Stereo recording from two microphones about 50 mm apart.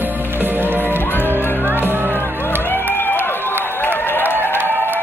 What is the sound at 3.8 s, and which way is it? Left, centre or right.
Applause, left.